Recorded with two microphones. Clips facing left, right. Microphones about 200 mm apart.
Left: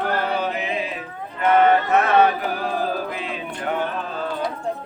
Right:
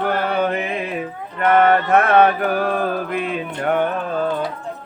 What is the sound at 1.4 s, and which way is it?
Mantra, 55° right (ahead or behind).